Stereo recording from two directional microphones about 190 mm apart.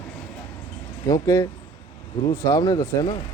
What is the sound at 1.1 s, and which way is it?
Speech, 20° left (ahead or behind).